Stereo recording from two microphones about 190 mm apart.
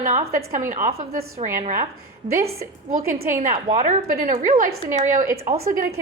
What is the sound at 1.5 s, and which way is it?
A woman's voice, 45° right (ahead or behind).